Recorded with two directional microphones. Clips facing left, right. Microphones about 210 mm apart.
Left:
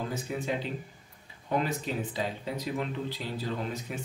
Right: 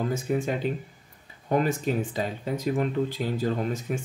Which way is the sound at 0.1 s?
50° right (ahead or behind).